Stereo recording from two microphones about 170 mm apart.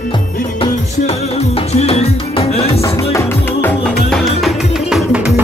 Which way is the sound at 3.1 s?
15° left (ahead or behind).